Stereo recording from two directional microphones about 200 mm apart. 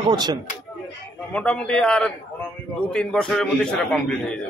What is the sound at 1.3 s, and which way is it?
A man's voice, 5° left (ahead or behind).